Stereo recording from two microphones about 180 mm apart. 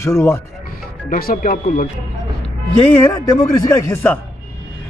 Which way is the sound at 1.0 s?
55° left (ahead or behind).